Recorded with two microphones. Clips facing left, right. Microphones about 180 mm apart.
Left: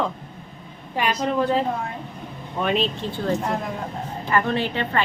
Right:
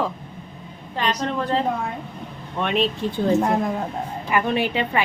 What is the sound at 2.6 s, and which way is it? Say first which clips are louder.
Speech: even; centre (ahead or behind).